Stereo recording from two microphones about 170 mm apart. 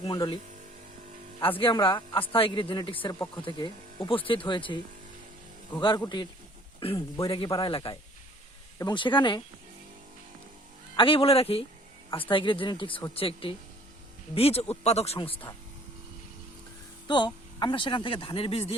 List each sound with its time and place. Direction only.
0.0 s speech: 25° left (ahead or behind)
1.4 s a man's voice: 30° left (ahead or behind)
6.0 s speech: 25° left (ahead or behind)
10.9 s a man's voice: 30° left (ahead or behind)
17.1 s speech: 25° left (ahead or behind)